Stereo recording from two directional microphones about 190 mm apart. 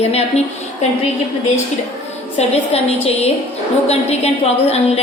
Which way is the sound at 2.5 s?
35° left (ahead or behind).